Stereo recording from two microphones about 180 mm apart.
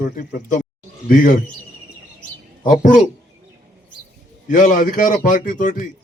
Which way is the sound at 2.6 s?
50° left (ahead or behind).